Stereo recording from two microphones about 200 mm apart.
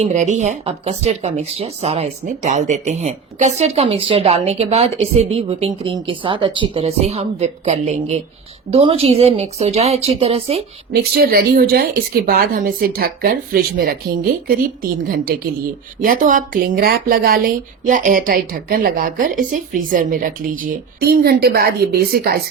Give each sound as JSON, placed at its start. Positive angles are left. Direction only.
{"t": 0.0, "sound": "speech", "side_deg": -35}
{"t": 10.9, "sound": "speech", "side_deg": -50}